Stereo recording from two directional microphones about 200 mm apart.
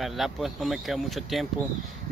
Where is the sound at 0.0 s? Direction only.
Centre (ahead or behind).